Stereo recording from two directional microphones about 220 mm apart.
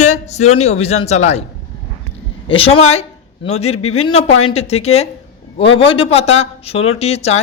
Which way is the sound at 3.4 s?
30° left (ahead or behind).